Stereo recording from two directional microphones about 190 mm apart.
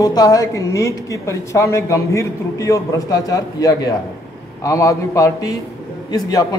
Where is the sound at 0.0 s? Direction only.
20° left (ahead or behind).